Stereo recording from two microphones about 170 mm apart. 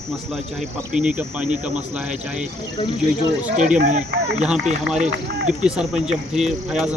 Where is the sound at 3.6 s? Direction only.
45° right (ahead or behind).